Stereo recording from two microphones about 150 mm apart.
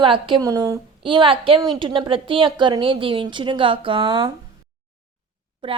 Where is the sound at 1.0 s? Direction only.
35° right (ahead or behind).